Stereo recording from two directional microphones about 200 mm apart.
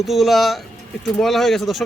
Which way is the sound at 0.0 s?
Centre (ahead or behind).